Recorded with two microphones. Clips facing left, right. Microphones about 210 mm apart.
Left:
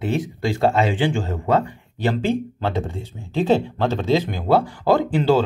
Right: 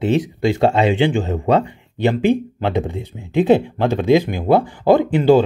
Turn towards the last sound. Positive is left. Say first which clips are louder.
# right 5 dB
turn(degrees=-15)  # may be behind; listen again after turning